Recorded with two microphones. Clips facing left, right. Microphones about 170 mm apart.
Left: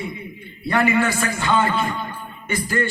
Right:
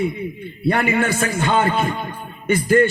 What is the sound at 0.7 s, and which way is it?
A man's voice, 50° right (ahead or behind).